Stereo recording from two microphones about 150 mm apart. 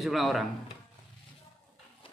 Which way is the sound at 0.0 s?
Centre (ahead or behind).